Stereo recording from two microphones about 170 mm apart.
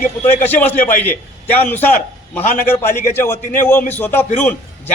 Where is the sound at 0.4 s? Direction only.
10° left (ahead or behind).